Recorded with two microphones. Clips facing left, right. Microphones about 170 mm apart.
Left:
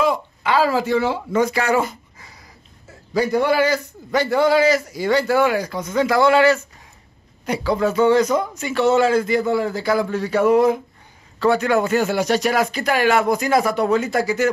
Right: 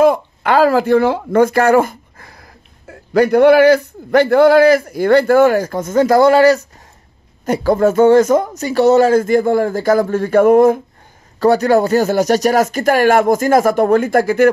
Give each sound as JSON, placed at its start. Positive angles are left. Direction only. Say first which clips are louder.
{"t": 0.0, "sound": "a man's voice", "louder": "right 8 dB", "side_deg": -55}
{"t": 11.3, "sound": "speech", "louder": "right 6 dB", "side_deg": -40}